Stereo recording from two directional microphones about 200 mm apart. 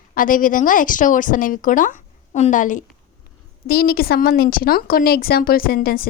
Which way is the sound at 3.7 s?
50° left (ahead or behind).